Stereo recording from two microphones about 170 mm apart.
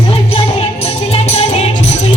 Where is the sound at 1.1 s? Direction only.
35° left (ahead or behind).